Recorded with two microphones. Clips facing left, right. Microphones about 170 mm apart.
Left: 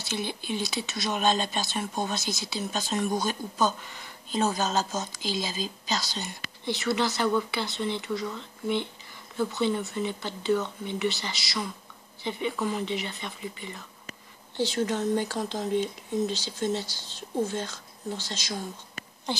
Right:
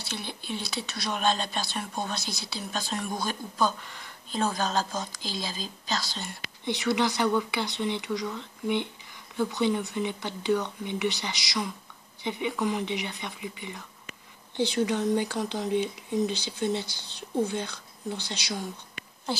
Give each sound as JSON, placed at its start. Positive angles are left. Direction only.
{"t": 0.1, "sound": "speech", "side_deg": 0}
{"t": 6.6, "sound": "speech", "side_deg": -15}
{"t": 9.5, "sound": "speech", "side_deg": -15}